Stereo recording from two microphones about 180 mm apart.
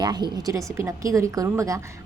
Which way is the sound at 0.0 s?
20° right (ahead or behind).